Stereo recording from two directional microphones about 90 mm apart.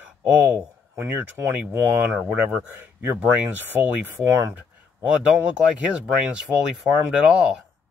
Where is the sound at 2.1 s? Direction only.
15° right (ahead or behind).